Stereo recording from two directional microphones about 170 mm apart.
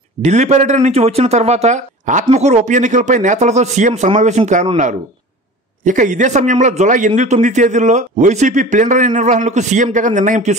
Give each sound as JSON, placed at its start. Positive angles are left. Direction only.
{"t": 0.2, "sound": "a man's voice", "side_deg": -40}
{"t": 5.9, "sound": "a man's voice", "side_deg": -45}